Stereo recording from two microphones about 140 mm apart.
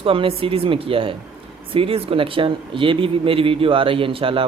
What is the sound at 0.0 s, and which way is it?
Speech, 40° right (ahead or behind).